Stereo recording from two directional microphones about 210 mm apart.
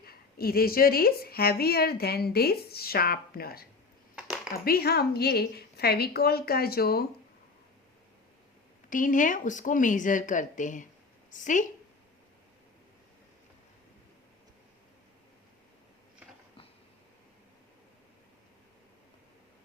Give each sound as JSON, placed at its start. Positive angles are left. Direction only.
{"t": 0.0, "sound": "a woman's voice", "side_deg": 45}
{"t": 4.1, "sound": "a sound", "side_deg": -5}
{"t": 4.5, "sound": "a woman's voice", "side_deg": 45}
{"t": 8.9, "sound": "a woman's voice", "side_deg": 40}